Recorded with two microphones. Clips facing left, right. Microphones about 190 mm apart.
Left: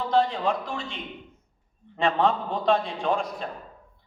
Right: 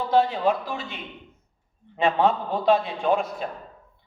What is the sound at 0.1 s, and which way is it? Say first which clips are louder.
Speech: right 3 dB; 5° right (ahead or behind).